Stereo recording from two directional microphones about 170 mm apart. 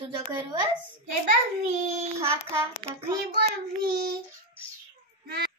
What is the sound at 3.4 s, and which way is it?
Child singing, 70° right (ahead or behind).